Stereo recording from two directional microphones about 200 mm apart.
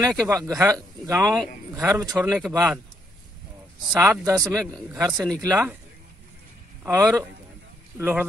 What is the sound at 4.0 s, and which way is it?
Speech, 15° right (ahead or behind).